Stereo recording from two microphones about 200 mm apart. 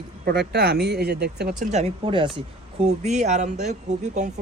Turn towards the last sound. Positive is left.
turn(degrees=-35)  # may be behind; listen again after turning